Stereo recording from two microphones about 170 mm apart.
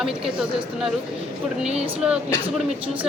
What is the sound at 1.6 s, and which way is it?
Speech, 35° right (ahead or behind).